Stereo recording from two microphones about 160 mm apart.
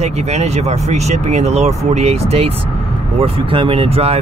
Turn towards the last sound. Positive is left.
turn(degrees=-40)  # may be behind; listen again after turning